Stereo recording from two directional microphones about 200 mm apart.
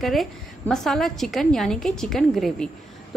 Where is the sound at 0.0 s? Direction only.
Centre (ahead or behind).